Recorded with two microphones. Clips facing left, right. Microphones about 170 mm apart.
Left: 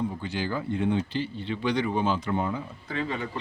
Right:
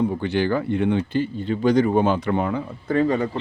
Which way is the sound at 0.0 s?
70° right (ahead or behind).